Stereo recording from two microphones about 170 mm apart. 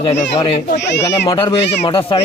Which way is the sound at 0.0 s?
35° left (ahead or behind).